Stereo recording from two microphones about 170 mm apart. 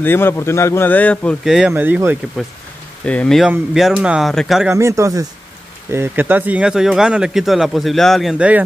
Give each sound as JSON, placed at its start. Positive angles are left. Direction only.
{"t": 0.0, "sound": "speech", "side_deg": 15}
{"t": 1.7, "sound": "speech", "side_deg": -15}
{"t": 3.1, "sound": "speech", "side_deg": 5}
{"t": 4.7, "sound": "speech", "side_deg": -15}